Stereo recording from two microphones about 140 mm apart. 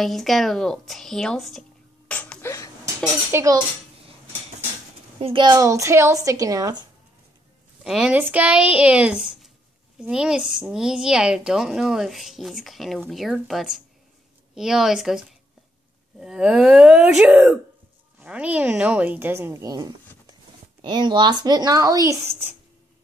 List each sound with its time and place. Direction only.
0.0 s a woman's voice: centre (ahead or behind)
2.0 s a sound: 10° left (ahead or behind)
2.8 s speech: 20° right (ahead or behind)
5.2 s a woman's voice: 35° right (ahead or behind)
7.8 s a woman's voice: 5° right (ahead or behind); by 22.1 s 25° right (ahead or behind)